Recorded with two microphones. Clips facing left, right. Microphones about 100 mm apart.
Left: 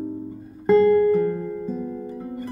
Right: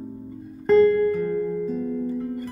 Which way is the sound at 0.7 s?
5° left (ahead or behind).